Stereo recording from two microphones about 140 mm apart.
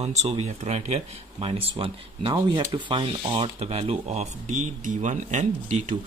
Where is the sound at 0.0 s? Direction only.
50° right (ahead or behind).